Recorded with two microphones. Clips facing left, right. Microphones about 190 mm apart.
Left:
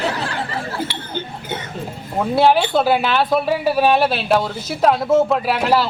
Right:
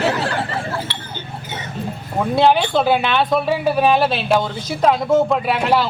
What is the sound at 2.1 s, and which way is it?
Speech, 5° left (ahead or behind).